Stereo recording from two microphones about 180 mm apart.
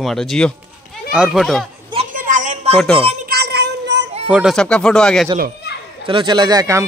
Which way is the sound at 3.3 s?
65° right (ahead or behind).